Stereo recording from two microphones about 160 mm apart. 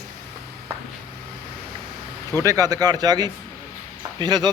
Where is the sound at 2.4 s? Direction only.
20° right (ahead or behind).